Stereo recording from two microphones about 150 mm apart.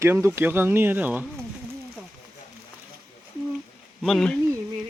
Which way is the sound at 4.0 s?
Centre (ahead or behind).